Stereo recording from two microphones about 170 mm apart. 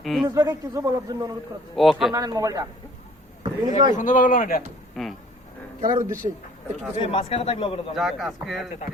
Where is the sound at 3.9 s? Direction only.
50° left (ahead or behind).